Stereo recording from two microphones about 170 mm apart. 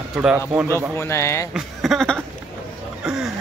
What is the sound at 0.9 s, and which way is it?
Speech, 15° left (ahead or behind).